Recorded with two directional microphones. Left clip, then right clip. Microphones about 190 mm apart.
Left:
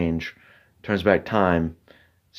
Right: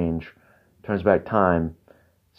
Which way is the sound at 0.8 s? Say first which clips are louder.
Even; 15° left (ahead or behind).